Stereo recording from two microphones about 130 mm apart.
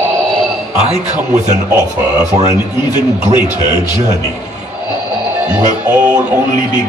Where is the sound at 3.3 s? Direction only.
40° left (ahead or behind).